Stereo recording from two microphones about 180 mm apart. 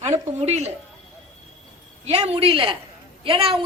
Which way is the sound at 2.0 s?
35° right (ahead or behind).